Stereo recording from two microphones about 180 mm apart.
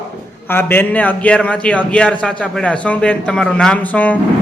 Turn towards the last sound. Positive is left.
turn(degrees=10)  # may be behind; listen again after turning